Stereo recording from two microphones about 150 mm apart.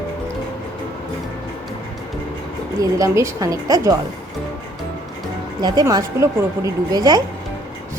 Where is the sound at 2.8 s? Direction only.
20° right (ahead or behind).